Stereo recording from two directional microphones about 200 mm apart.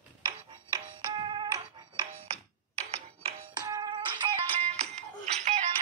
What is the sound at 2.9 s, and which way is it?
Music, 25° right (ahead or behind).